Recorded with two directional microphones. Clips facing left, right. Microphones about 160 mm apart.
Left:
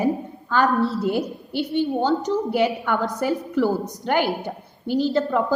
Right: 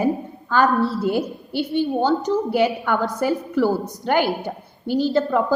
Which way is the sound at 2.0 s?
40° right (ahead or behind).